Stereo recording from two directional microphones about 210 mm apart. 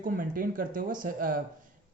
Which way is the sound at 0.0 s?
40° right (ahead or behind).